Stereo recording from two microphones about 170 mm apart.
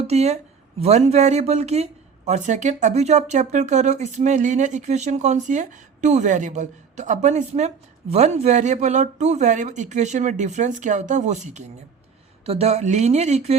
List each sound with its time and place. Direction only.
0.0 s speech: 40° right (ahead or behind)